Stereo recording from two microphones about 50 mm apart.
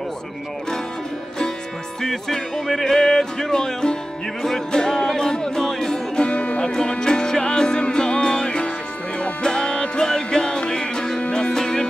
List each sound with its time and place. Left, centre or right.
2.0 s music: centre; by 6.7 s left
6.7 s music: centre